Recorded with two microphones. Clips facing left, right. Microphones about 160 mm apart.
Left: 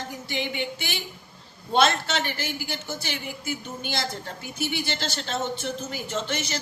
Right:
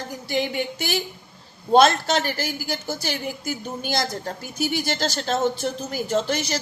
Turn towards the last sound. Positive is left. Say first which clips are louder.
# right 6 dB
turn(degrees=-40)  # may be behind; listen again after turning